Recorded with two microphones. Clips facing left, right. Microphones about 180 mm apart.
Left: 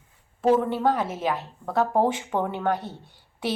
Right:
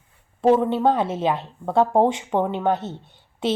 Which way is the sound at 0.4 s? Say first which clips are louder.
Right 3 dB; 20° right (ahead or behind).